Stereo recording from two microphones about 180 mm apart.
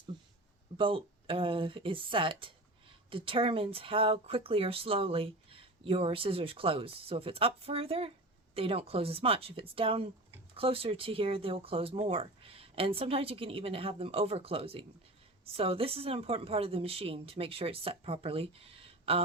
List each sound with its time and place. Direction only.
0.8 s speech: 30° right (ahead or behind)